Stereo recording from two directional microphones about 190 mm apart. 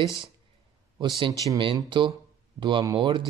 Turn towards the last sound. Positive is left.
turn(degrees=-25)  # may be behind; listen again after turning